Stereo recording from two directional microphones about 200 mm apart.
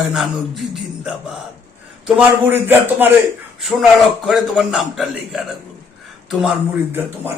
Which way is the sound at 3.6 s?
Centre (ahead or behind).